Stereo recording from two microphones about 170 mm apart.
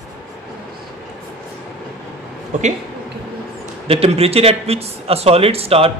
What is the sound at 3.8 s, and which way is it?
Speech, 35° right (ahead or behind).